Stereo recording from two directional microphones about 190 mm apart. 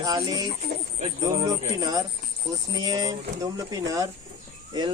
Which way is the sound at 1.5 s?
20° right (ahead or behind).